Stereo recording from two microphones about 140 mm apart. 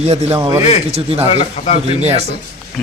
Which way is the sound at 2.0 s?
50° right (ahead or behind).